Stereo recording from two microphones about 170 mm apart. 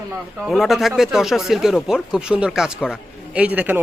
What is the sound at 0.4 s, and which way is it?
A man's voice, centre (ahead or behind).